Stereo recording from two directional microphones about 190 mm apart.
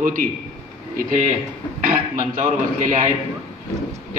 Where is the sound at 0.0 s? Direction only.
45° right (ahead or behind).